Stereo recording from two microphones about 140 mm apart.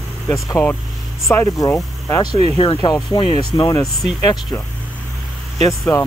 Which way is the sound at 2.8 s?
30° left (ahead or behind).